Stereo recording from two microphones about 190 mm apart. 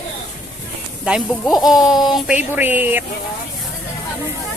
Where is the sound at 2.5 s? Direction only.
10° right (ahead or behind).